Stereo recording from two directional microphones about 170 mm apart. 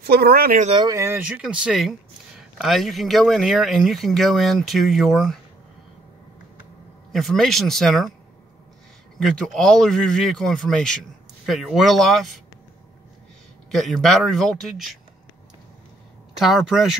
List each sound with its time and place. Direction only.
0.0 s speech: 65° right (ahead or behind)
0.7 s speech: 25° right (ahead or behind); by 5.4 s centre (ahead or behind)
7.1 s speech: centre (ahead or behind)
9.2 s speech: centre (ahead or behind)
13.7 s speech: centre (ahead or behind)
16.3 s speech: centre (ahead or behind)